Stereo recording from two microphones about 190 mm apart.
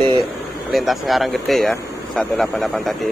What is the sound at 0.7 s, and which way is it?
Speech, centre (ahead or behind).